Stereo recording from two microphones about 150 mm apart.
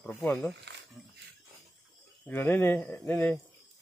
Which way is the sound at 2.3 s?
15° left (ahead or behind).